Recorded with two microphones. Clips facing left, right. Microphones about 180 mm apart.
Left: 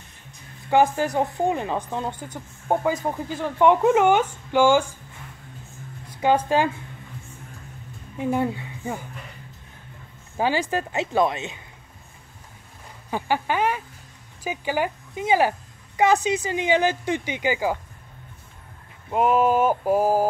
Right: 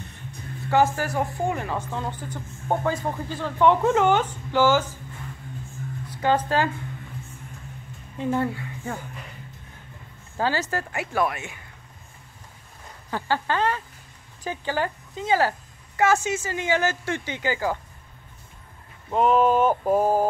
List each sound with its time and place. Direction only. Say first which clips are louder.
0.7 s speech: left 2 dB; 15° left (ahead or behind)
6.2 s speech: left 2 dB; 15° left (ahead or behind)
8.2 s a woman's voice: left 1 dB; 15° left (ahead or behind)
10.3 s speech: left 2 dB; 15° left (ahead or behind)
13.1 s speech: left 1 dB; 15° left (ahead or behind)
19.0 s speech: even; 5° left (ahead or behind)